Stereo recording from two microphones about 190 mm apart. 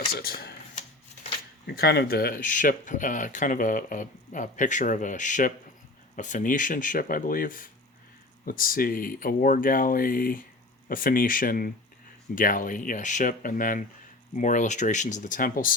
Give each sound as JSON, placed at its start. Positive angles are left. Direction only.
{"t": 0.2, "sound": "speech", "side_deg": 55}
{"t": 1.6, "sound": "speech", "side_deg": 55}